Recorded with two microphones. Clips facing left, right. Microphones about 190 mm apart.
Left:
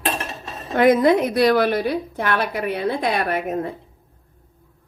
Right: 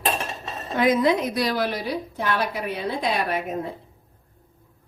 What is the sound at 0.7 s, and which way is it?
A woman's voice, 60° left (ahead or behind).